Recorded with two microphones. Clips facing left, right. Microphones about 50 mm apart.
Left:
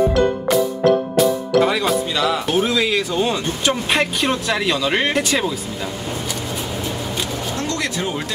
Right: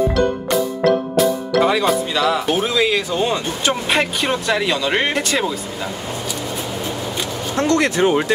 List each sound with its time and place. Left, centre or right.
1.1 s speech: centre
7.5 s speech: right